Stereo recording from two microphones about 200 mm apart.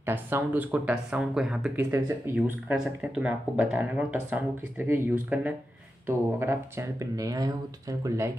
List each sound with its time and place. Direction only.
0.0 s speech: 10° right (ahead or behind)